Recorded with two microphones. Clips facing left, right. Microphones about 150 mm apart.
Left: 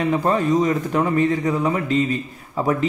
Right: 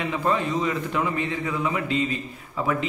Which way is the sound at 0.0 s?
40° left (ahead or behind).